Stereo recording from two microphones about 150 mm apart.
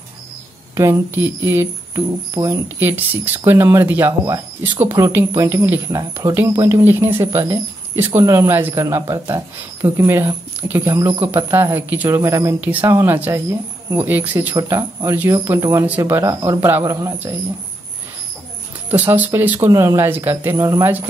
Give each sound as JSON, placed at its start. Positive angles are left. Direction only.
{"t": 0.7, "sound": "speech", "side_deg": -20}
{"t": 14.5, "sound": "speech", "side_deg": -20}
{"t": 18.9, "sound": "speech", "side_deg": -10}